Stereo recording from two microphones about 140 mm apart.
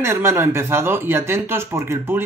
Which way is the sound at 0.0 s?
15° right (ahead or behind).